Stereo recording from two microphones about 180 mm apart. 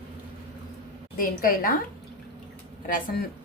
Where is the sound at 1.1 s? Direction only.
50° left (ahead or behind).